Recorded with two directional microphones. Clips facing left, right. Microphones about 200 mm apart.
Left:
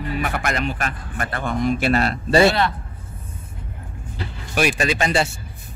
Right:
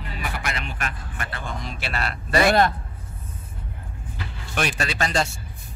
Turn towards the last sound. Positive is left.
turn(degrees=15)  # may be behind; listen again after turning